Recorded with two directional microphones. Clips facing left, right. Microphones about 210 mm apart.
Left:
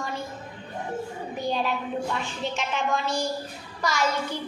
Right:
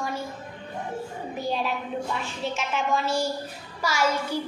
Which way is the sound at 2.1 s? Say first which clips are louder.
Even; 5° right (ahead or behind).